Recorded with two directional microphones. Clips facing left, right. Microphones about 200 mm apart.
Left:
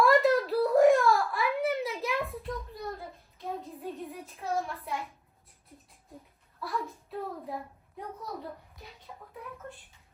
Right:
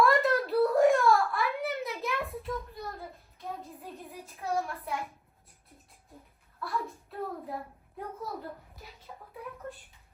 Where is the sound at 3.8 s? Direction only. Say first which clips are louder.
Left 5 dB; centre (ahead or behind).